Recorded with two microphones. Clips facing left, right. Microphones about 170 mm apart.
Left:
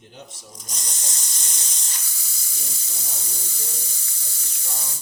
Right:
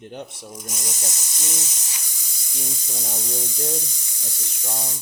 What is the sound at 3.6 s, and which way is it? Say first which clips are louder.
Speech: right 11 dB; 15° right (ahead or behind).